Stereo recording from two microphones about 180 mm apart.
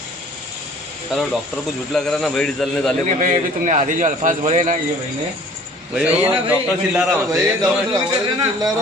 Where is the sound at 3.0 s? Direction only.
40° right (ahead or behind).